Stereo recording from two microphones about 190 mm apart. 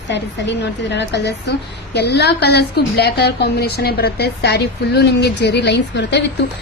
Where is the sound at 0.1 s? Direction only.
65° left (ahead or behind).